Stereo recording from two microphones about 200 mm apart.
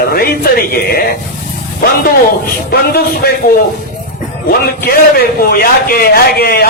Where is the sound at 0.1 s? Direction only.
50° left (ahead or behind).